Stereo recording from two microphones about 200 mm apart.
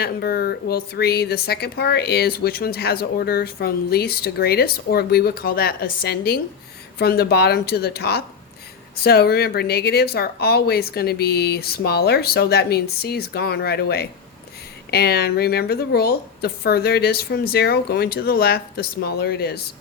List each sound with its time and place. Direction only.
0.0 s speech: 50° left (ahead or behind)